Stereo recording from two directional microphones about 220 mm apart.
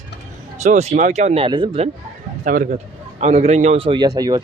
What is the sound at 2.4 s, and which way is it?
Speech, 40° right (ahead or behind).